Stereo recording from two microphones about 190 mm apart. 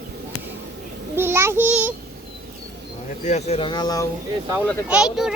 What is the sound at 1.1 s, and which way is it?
Child singing, 10° right (ahead or behind).